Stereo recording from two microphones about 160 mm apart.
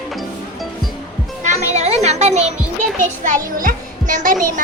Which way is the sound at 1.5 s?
45° right (ahead or behind).